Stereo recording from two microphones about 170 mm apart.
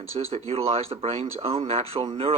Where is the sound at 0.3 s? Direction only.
35° right (ahead or behind).